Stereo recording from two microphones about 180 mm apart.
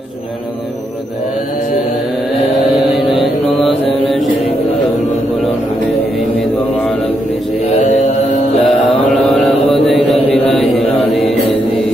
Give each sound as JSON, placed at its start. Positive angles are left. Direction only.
{"t": 2.6, "sound": "vehicle", "side_deg": 0}
{"t": 3.2, "sound": "mantra", "side_deg": 0}
{"t": 7.6, "sound": "mantra", "side_deg": 35}
{"t": 8.6, "sound": "mantra", "side_deg": 5}